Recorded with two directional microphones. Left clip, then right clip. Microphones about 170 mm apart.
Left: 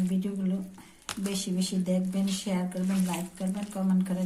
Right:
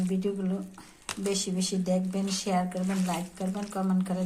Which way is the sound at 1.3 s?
35° right (ahead or behind).